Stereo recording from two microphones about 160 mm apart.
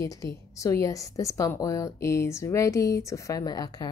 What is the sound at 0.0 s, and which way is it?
A woman's voice, 20° left (ahead or behind).